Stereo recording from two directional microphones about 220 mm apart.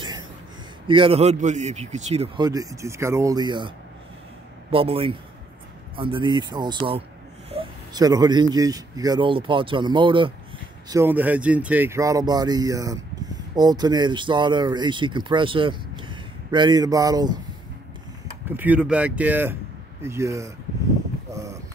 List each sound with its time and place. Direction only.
0.8 s a man's voice: 25° right (ahead or behind)
10.9 s speech: 10° right (ahead or behind)
18.6 s speech: 5° right (ahead or behind)
21.3 s a sound: 15° right (ahead or behind)